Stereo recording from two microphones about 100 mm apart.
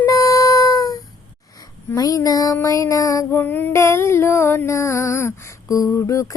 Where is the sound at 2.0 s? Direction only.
35° left (ahead or behind).